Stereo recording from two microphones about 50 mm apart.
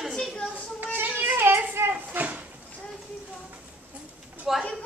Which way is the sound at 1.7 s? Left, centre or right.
Right.